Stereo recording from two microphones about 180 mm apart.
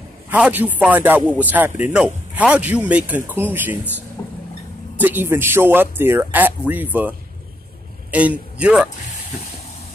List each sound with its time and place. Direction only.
0.3 s a man's voice: 10° right (ahead or behind)
4.2 s vehicle: 15° left (ahead or behind)
4.9 s a man's voice: 10° right (ahead or behind)